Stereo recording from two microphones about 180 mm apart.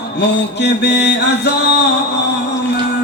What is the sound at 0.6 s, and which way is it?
Speech, 70° left (ahead or behind).